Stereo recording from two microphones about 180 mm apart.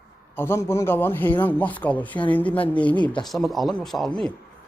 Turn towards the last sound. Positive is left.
turn(degrees=0)  # may be behind; listen again after turning